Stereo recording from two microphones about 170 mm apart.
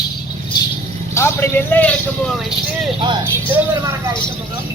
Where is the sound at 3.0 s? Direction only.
25° right (ahead or behind).